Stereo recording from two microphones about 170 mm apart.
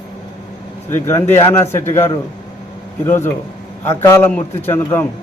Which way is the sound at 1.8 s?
40° left (ahead or behind).